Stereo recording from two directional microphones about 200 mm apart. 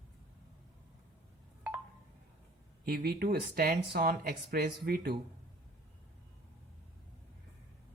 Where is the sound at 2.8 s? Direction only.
50° right (ahead or behind).